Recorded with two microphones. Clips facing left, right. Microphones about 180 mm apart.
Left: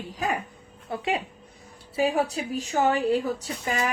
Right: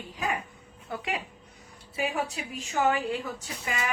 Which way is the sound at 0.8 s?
30° left (ahead or behind).